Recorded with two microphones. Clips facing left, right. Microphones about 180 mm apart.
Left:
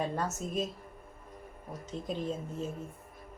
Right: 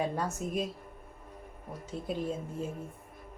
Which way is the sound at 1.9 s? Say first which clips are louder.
Right 1 dB; 10° right (ahead or behind).